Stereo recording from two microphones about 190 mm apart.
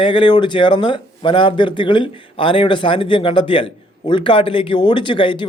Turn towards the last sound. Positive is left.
turn(degrees=25)  # may be behind; listen again after turning